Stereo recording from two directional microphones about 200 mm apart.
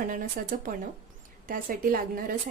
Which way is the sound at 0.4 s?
50° right (ahead or behind).